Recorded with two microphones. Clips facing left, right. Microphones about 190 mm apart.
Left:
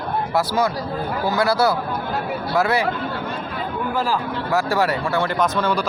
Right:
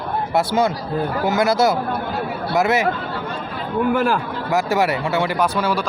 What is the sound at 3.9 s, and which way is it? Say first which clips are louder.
Speech: right 4 dB; 65° right (ahead or behind).